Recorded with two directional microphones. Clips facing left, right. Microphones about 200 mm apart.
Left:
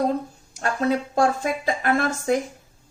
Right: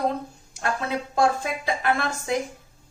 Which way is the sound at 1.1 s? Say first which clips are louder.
Left 2 dB; 45° left (ahead or behind).